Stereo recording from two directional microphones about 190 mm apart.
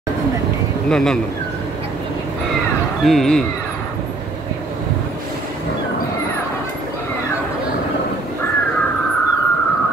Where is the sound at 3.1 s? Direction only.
Centre (ahead or behind).